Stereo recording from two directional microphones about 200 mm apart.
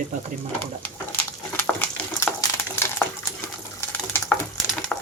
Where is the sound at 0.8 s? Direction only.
10° left (ahead or behind).